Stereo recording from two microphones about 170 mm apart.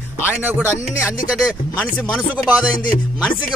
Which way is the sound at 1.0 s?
5° right (ahead or behind).